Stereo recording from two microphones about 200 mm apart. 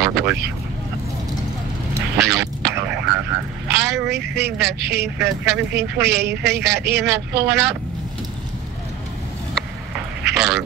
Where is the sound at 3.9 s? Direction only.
60° right (ahead or behind).